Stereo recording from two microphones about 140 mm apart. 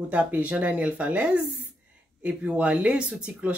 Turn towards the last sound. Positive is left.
turn(degrees=-10)  # may be behind; listen again after turning